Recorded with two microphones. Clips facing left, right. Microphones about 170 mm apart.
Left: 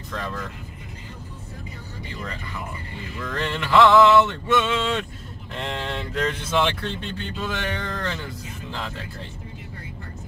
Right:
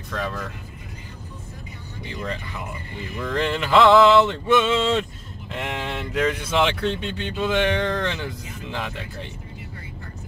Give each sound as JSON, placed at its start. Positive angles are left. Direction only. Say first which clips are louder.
{"t": 0.1, "sound": "speech", "louder": "right 2 dB", "side_deg": 0}
{"t": 3.2, "sound": "male singing", "louder": "right 4 dB", "side_deg": -15}
{"t": 5.5, "sound": "speech", "louder": "right 1 dB", "side_deg": -10}